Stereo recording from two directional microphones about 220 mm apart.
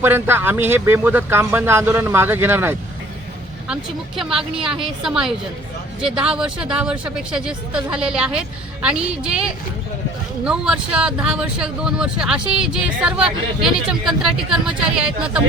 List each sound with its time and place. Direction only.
0.0 s speech: 10° right (ahead or behind)
4.2 s speech: centre (ahead or behind)